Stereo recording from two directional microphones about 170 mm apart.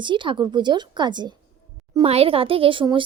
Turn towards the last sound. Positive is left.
turn(degrees=-30)  # may be behind; listen again after turning